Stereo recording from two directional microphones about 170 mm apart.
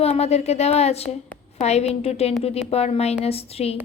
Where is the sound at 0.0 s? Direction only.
40° left (ahead or behind).